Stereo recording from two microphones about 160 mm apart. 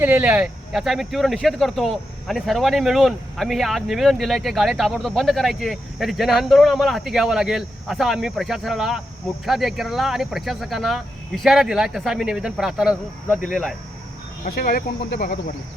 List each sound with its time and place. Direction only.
0.0 s speech: 10° right (ahead or behind)
14.4 s speech: 65° left (ahead or behind)